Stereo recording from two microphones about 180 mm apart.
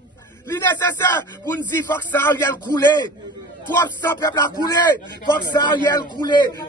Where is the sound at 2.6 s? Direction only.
25° left (ahead or behind).